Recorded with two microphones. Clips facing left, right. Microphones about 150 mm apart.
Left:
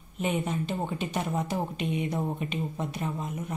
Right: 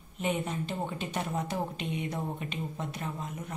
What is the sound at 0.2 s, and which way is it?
Speech, 15° left (ahead or behind).